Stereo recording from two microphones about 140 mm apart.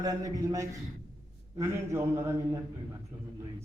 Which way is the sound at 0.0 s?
25° right (ahead or behind).